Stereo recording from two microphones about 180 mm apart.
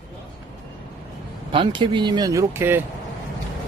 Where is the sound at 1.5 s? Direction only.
25° right (ahead or behind).